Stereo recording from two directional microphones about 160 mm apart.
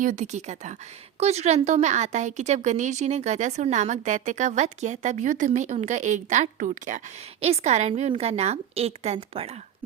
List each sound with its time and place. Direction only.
0.0 s a woman's voice: 50° right (ahead or behind)